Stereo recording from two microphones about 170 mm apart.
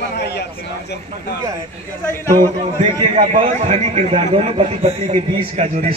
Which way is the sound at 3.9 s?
30° right (ahead or behind).